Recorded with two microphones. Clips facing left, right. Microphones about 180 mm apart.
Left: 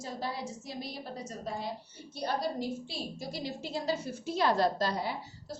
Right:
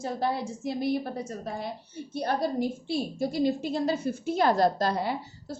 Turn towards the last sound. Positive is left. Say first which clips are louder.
# right 5 dB
turn(degrees=-55)  # may be behind; listen again after turning